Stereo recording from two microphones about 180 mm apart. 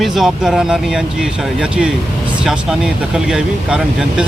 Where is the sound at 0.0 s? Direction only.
Centre (ahead or behind).